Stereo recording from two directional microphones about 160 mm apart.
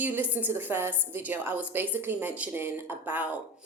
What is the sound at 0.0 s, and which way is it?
A woman's voice, 10° right (ahead or behind).